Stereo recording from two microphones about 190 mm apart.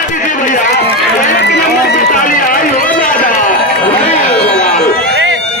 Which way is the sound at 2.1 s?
45° left (ahead or behind).